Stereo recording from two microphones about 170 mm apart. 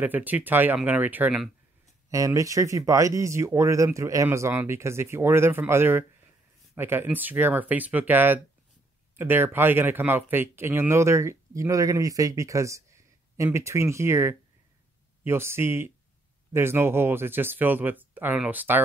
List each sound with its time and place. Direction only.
0.0 s speech: 10° right (ahead or behind)
2.0 s speech: 20° right (ahead or behind)